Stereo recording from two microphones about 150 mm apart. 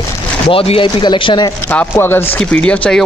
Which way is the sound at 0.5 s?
40° left (ahead or behind).